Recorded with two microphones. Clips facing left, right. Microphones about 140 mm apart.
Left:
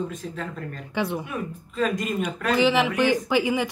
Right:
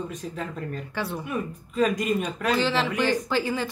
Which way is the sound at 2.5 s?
15° left (ahead or behind).